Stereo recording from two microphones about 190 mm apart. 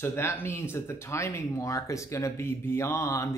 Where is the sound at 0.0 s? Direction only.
15° left (ahead or behind).